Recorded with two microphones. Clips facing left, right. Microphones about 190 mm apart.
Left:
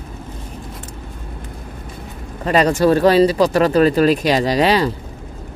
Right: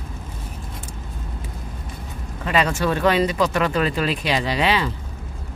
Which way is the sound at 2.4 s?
40° left (ahead or behind).